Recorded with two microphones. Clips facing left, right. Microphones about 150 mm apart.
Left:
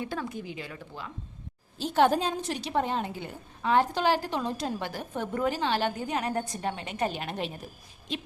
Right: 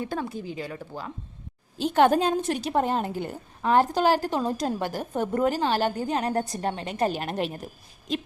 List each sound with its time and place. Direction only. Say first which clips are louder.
0.0 s a woman's voice: right 3 dB; 40° right (ahead or behind)
1.8 s a woman's voice: right 4 dB; 60° right (ahead or behind); by 7.1 s 35° right (ahead or behind)